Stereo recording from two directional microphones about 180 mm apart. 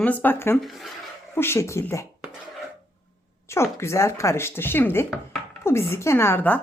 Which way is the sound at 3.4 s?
15° left (ahead or behind).